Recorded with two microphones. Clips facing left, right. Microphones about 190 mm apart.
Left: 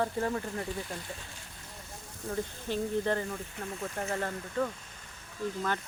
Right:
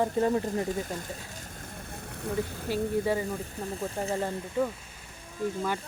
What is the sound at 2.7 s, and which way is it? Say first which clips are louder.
Speech: right 2 dB; 10° right (ahead or behind).